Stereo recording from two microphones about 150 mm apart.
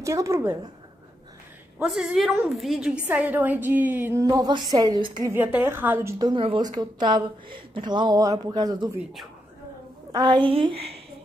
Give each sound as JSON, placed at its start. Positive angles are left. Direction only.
{"t": 0.0, "sound": "a woman's voice", "side_deg": -20}
{"t": 1.8, "sound": "a woman's voice", "side_deg": -5}
{"t": 4.2, "sound": "a woman's voice", "side_deg": -25}
{"t": 5.3, "sound": "a woman's voice", "side_deg": -15}
{"t": 6.1, "sound": "a woman's voice", "side_deg": -30}
{"t": 10.1, "sound": "a woman's voice", "side_deg": -30}